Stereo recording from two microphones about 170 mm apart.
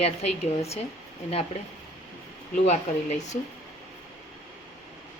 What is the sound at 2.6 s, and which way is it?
Speech, 45° left (ahead or behind).